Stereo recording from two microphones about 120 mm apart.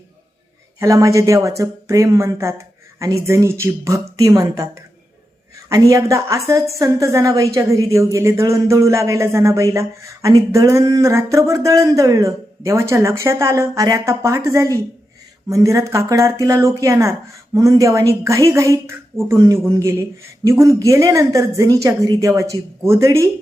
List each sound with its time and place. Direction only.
0.8 s a woman's voice: 25° right (ahead or behind)